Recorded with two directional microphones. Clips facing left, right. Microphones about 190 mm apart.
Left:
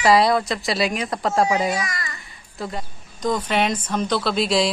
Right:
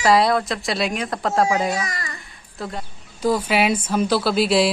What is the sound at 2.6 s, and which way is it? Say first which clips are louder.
Speech: left 1 dB; 5° right (ahead or behind).